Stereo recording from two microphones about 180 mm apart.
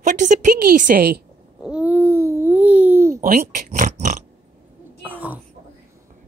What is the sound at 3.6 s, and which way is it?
Pig, 45° right (ahead or behind).